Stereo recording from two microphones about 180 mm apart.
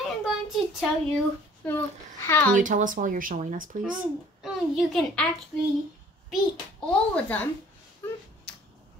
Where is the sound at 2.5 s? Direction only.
45° right (ahead or behind).